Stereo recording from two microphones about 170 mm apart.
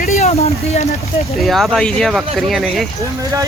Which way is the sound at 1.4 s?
Centre (ahead or behind).